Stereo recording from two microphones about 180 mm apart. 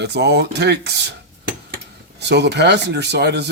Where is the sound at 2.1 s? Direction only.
70° right (ahead or behind).